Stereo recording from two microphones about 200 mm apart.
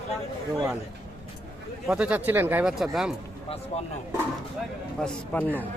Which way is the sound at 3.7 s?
30° left (ahead or behind).